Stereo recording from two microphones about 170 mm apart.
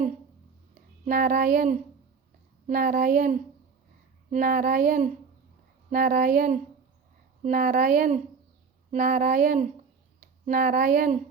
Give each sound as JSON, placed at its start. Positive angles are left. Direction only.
{"t": 1.0, "sound": "speech", "side_deg": -55}
{"t": 2.6, "sound": "a sound", "side_deg": -55}
{"t": 7.4, "sound": "speech", "side_deg": -55}